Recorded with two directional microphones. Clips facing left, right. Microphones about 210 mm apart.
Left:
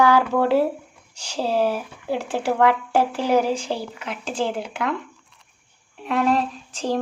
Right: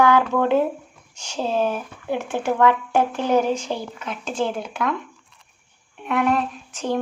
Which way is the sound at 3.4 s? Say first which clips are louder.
Even; 30° left (ahead or behind).